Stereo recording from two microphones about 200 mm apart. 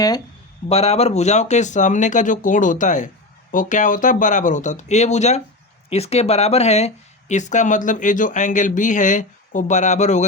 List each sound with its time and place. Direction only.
0.7 s speech: 30° left (ahead or behind)